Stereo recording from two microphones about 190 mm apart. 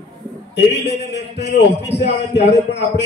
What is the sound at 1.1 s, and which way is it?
A man's voice, 65° left (ahead or behind).